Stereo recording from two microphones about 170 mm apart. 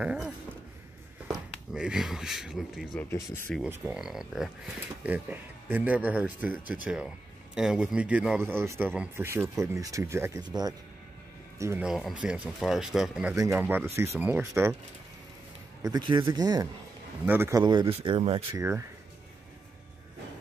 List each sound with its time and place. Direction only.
0.0 s speech: 5° right (ahead or behind)
3.0 s speech: 15° left (ahead or behind)
3.8 s speech: 5° right (ahead or behind)
11.8 s speech: 5° right (ahead or behind)
13.4 s speech: 15° right (ahead or behind)
15.8 s speech: 25° right (ahead or behind)
18.6 s speech: 15° right (ahead or behind)